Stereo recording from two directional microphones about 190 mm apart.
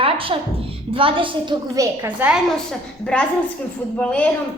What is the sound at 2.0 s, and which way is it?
Speech, 10° right (ahead or behind).